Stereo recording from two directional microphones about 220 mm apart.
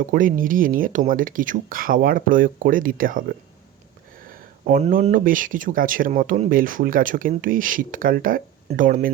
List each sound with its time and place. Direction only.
0.0 s speech: 40° right (ahead or behind)
4.3 s a sound: 40° right (ahead or behind)
4.8 s speech: 35° right (ahead or behind)